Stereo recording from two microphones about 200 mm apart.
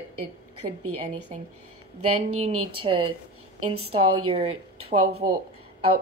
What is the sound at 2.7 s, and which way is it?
Speech, 25° right (ahead or behind).